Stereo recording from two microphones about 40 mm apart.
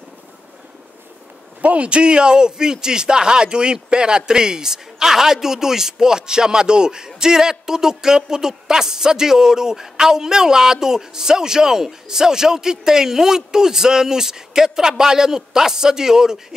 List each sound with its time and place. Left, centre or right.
1.6 s a woman's voice: right; by 16.3 s centre